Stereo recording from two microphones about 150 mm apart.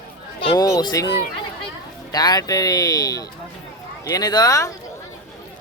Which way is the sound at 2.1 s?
25° left (ahead or behind).